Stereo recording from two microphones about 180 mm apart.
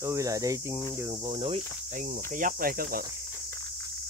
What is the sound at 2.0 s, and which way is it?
Speech, 50° right (ahead or behind).